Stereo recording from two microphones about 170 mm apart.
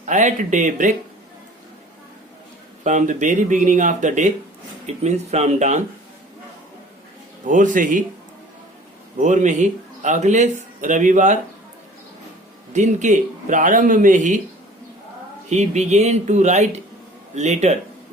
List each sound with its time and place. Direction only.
0.0 s speech: 45° right (ahead or behind)
2.8 s speech: 45° right (ahead or behind)
7.4 s speech: 50° right (ahead or behind)
9.2 s speech: 45° right (ahead or behind)
12.7 s speech: 45° right (ahead or behind)
15.4 s speech: 45° right (ahead or behind)